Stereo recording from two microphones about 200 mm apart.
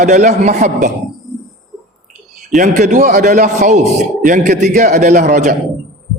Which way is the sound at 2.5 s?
40° right (ahead or behind).